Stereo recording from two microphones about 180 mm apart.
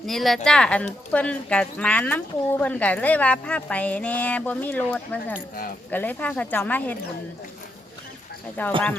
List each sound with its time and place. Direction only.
0.0 s speech: centre (ahead or behind)
8.6 s speech: 10° left (ahead or behind)